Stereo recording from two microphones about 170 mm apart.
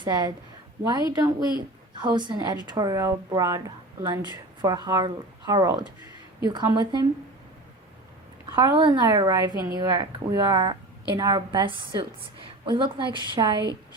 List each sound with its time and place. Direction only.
0.0 s speech: 25° right (ahead or behind)
8.5 s speech: 25° right (ahead or behind)